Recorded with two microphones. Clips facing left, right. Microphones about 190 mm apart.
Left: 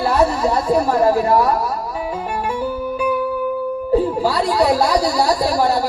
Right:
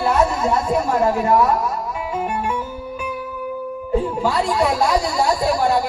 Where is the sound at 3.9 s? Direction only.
35° left (ahead or behind).